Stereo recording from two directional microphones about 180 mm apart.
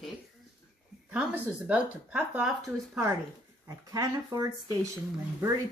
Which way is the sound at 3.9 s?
20° right (ahead or behind).